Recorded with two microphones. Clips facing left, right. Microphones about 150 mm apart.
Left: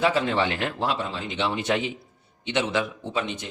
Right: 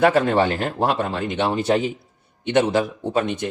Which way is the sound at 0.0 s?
50° right (ahead or behind).